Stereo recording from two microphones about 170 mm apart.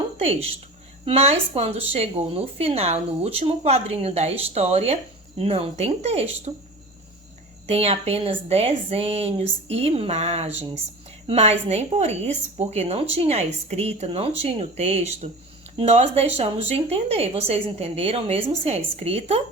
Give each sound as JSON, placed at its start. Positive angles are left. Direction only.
{"t": 0.2, "sound": "a woman's voice", "side_deg": -35}
{"t": 7.7, "sound": "a woman's voice", "side_deg": -35}